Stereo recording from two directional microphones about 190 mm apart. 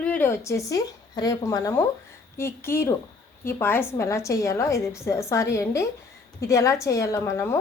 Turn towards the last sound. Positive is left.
turn(degrees=15)  # may be behind; listen again after turning